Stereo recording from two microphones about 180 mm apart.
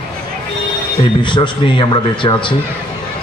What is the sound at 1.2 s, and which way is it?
A man's voice, 25° left (ahead or behind).